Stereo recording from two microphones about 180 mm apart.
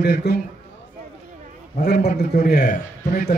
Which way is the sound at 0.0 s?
65° left (ahead or behind).